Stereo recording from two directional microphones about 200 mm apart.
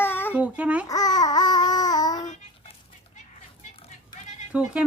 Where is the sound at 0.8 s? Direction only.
20° left (ahead or behind).